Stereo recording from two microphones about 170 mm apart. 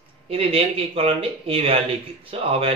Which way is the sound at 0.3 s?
35° right (ahead or behind).